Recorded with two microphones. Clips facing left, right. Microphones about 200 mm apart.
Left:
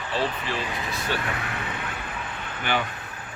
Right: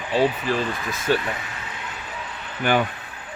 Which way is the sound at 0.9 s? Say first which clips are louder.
Right 6 dB; 45° right (ahead or behind).